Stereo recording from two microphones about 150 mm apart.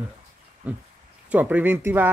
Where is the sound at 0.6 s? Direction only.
10° right (ahead or behind).